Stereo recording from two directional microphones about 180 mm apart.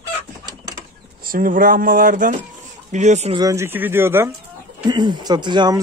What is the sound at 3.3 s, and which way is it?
Speech, 20° right (ahead or behind).